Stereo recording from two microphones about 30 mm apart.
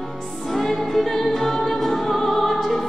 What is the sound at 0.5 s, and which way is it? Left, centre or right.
Music, centre.